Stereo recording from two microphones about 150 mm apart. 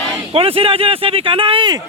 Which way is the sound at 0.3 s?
40° right (ahead or behind).